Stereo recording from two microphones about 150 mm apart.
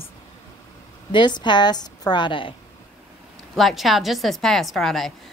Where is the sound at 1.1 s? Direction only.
30° left (ahead or behind).